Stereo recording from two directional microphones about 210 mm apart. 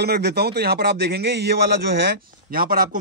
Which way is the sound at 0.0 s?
50° right (ahead or behind).